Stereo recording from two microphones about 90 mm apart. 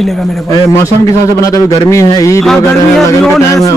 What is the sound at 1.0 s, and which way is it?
A man's voice, 40° left (ahead or behind).